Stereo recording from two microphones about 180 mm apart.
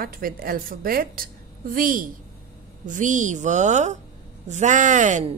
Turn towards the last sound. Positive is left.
turn(degrees=-40)  # may be behind; listen again after turning